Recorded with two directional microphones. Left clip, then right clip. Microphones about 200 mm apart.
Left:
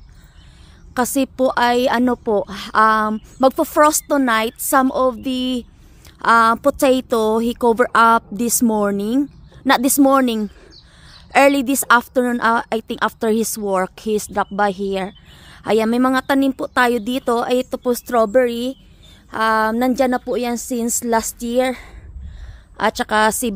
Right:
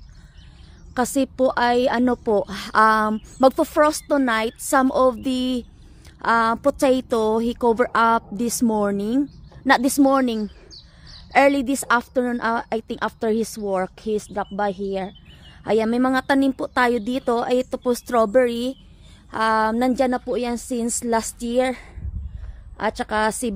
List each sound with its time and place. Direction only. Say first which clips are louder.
0.9 s a woman's voice: left 3 dB; 10° left (ahead or behind)